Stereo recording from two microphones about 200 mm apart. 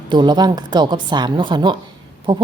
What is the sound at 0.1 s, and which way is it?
A woman's voice, 20° right (ahead or behind).